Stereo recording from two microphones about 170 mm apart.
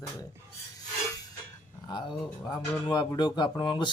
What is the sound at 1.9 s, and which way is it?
Speech, 25° left (ahead or behind).